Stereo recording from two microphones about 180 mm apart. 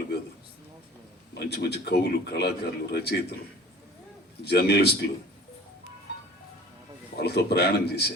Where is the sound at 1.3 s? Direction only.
65° left (ahead or behind).